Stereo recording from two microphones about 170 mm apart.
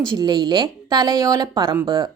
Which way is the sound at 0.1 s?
25° right (ahead or behind).